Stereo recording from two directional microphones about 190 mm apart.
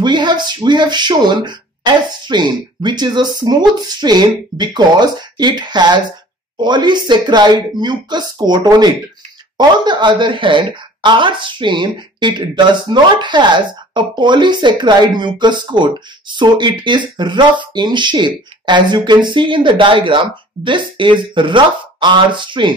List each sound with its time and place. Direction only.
0.0 s speech: 25° right (ahead or behind)